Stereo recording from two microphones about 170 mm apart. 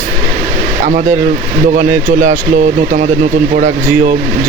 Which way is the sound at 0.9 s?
50° right (ahead or behind).